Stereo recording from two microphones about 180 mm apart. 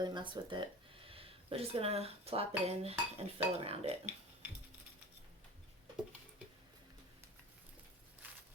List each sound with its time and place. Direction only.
0.0 s speech: 25° right (ahead or behind)